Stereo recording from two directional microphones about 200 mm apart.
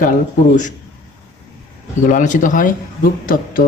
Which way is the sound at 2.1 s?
40° left (ahead or behind).